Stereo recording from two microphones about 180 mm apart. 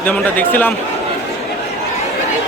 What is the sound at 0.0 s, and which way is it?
Speech, 10° left (ahead or behind).